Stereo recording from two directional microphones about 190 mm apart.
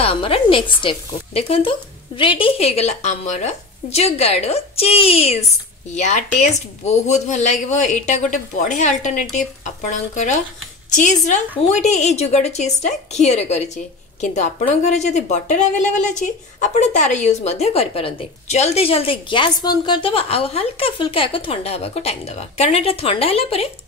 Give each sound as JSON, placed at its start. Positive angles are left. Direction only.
{"t": 0.0, "sound": "speech", "side_deg": 30}